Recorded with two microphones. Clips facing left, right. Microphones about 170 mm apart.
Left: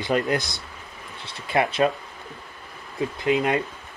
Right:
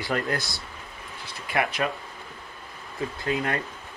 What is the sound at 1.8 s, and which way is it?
Speech, 25° left (ahead or behind).